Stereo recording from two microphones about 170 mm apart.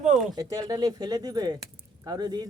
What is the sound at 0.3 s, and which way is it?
Speech, 20° right (ahead or behind).